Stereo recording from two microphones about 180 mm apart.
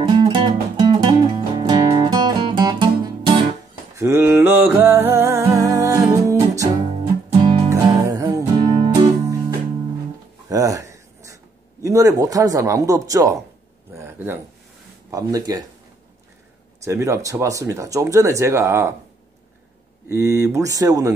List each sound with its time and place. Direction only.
0.0 s music: 25° right (ahead or behind)
4.0 s music: 15° right (ahead or behind)
7.7 s music: 20° right (ahead or behind)
10.5 s writing: 20° right (ahead or behind)
11.8 s speech: 20° right (ahead or behind)
13.9 s a sound: 10° right (ahead or behind)
15.0 s speech: 20° right (ahead or behind)
16.8 s speech: 15° right (ahead or behind)
20.1 s speech: 15° right (ahead or behind)